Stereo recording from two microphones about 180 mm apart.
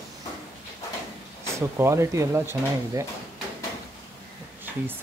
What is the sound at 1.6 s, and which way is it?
Speech, 15° right (ahead or behind).